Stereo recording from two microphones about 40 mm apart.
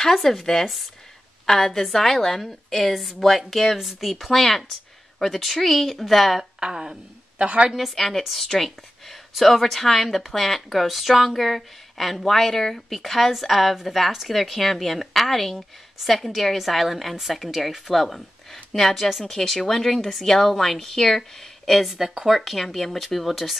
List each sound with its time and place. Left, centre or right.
0.0 s a woman's voice: centre
6.6 s speech: centre
7.3 s a woman's voice: right
7.7 s a woman's voice: centre
19.2 s speech: centre
21.9 s speech: centre
22.4 s a woman's voice: centre